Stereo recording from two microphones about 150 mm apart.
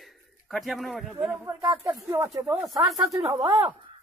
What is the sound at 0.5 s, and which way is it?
Speech, centre (ahead or behind).